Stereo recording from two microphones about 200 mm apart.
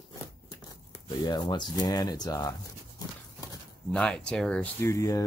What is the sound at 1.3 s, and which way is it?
Speech, 20° left (ahead or behind).